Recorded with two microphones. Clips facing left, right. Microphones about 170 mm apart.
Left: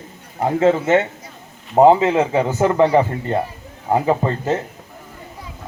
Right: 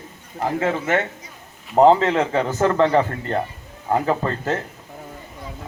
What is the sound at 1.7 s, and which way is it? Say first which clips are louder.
A man's voice: left 2 dB; 10° left (ahead or behind).